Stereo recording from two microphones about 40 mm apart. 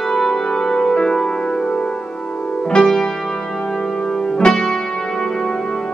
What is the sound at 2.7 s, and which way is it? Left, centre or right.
Music, centre.